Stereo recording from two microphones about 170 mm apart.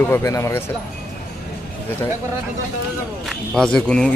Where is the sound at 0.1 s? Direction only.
15° left (ahead or behind).